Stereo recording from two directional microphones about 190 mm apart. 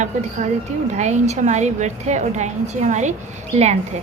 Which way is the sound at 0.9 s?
35° right (ahead or behind).